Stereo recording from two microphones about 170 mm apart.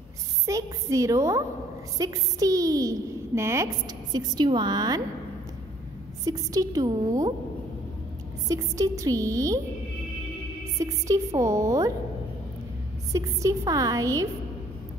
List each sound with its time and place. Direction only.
0.5 s a woman's voice: 20° right (ahead or behind)
6.2 s a woman's voice: 20° right (ahead or behind)
8.5 s a woman's voice: 20° right (ahead or behind)
10.8 s a woman's voice: 20° right (ahead or behind)
13.1 s a woman's voice: 20° right (ahead or behind)